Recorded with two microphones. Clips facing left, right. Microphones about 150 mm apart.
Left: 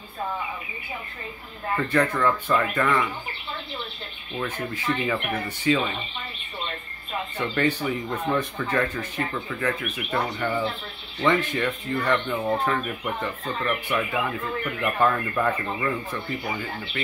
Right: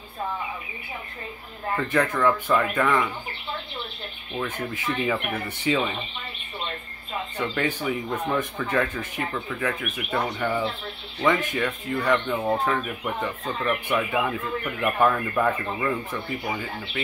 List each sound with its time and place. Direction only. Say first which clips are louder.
2.0 s speech: right 1 dB; centre (ahead or behind)
4.4 s speech: even; 10° right (ahead or behind)
7.3 s speech: left 2 dB; 15° right (ahead or behind)
7.8 s speech: even; centre (ahead or behind)